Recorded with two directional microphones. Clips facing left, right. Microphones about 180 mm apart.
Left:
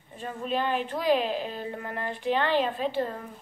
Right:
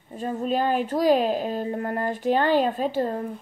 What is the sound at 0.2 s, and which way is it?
A woman's voice, 40° right (ahead or behind).